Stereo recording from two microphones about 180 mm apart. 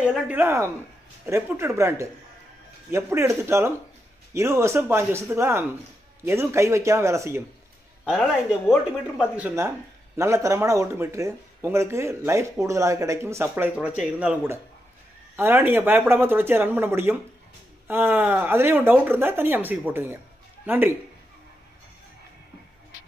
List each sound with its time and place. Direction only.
0.0 s speech: 5° right (ahead or behind)
8.0 s speech: centre (ahead or behind)